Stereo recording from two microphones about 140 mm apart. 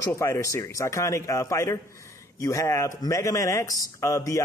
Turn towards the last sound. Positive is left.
turn(degrees=20)  # may be behind; listen again after turning